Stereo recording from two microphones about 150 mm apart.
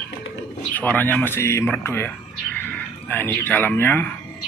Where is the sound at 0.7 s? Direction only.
10° left (ahead or behind).